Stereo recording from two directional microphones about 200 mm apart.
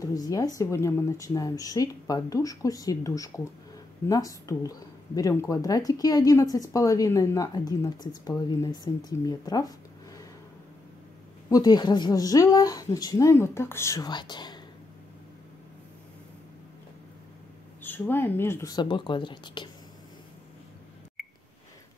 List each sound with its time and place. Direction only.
0.0 s speech: 20° left (ahead or behind)
11.4 s speech: 20° left (ahead or behind)
17.8 s speech: 10° left (ahead or behind)